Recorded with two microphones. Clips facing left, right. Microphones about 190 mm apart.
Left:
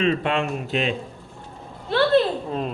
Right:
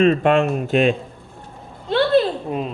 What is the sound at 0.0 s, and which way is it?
Speech, 50° right (ahead or behind).